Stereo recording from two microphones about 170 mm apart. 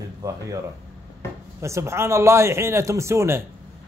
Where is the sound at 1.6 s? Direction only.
15° right (ahead or behind).